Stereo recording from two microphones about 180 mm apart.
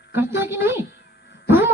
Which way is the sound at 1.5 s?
15° right (ahead or behind).